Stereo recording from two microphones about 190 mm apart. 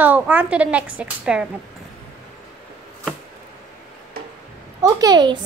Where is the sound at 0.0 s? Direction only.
10° right (ahead or behind).